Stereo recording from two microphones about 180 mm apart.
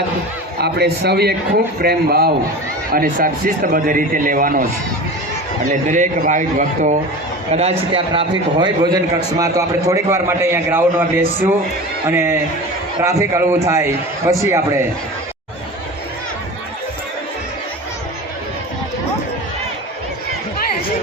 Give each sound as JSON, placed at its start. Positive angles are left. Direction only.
{"t": 0.6, "sound": "a man's voice", "side_deg": -65}
{"t": 5.9, "sound": "a man's voice", "side_deg": -45}